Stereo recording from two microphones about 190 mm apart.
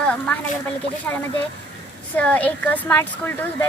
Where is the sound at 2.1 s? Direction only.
10° left (ahead or behind).